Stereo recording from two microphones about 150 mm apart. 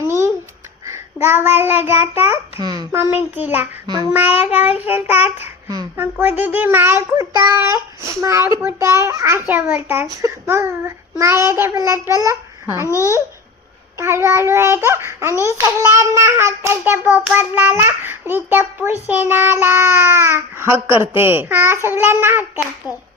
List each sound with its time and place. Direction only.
0.0 s babbling: 15° right (ahead or behind)
1.6 s child singing: 15° right (ahead or behind)
2.6 s child singing: 30° right (ahead or behind)
2.9 s child singing: 15° right (ahead or behind)
3.8 s child singing: 25° right (ahead or behind)
4.1 s child singing: 10° right (ahead or behind)
12.2 s a child's voice: 20° right (ahead or behind)
12.8 s a child's voice: 20° left (ahead or behind)
14.0 s child singing: 15° right (ahead or behind)